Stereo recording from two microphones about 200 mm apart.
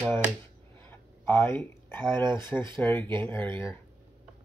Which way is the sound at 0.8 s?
10° left (ahead or behind).